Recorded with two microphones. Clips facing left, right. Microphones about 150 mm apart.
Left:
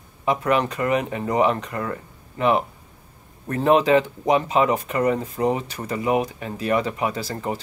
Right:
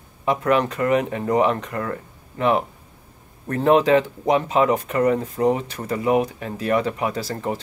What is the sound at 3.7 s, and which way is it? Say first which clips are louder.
Speech: right 1 dB; 15° left (ahead or behind).